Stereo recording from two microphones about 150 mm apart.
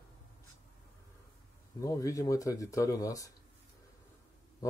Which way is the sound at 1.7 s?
20° left (ahead or behind).